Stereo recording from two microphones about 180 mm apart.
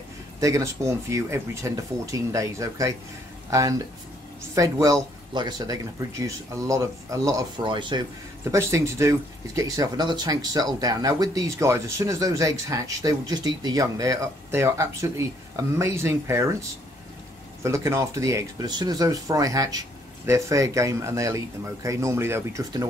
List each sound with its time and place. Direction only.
0.4 s speech: 20° right (ahead or behind)
8.5 s speech: 15° right (ahead or behind)
17.6 s speech: 15° right (ahead or behind)